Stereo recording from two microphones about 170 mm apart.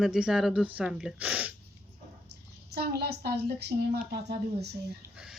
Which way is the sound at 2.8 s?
70° right (ahead or behind).